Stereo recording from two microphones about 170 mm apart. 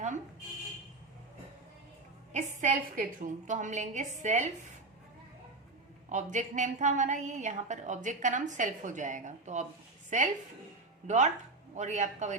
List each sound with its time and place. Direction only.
2.3 s a woman's voice: 50° right (ahead or behind)
6.1 s a woman's voice: 45° right (ahead or behind)